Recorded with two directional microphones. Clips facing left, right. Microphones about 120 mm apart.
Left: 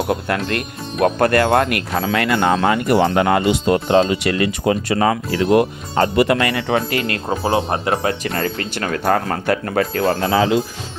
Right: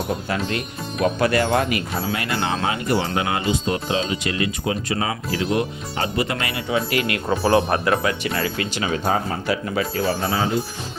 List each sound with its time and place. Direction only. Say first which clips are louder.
0.1 s speech: left 4 dB; 60° left (ahead or behind)
1.6 s speech: left 4 dB; 80° left; by 5.1 s 65° left (ahead or behind)
5.4 s speech: left 8 dB; 50° left (ahead or behind)
6.9 s speech: left 1 dB; 30° left (ahead or behind)
8.2 s speech: left 2 dB; 45° left (ahead or behind); by 10.6 s 90° left